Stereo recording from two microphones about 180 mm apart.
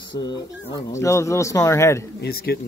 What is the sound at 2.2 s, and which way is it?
Speech, 60° left (ahead or behind).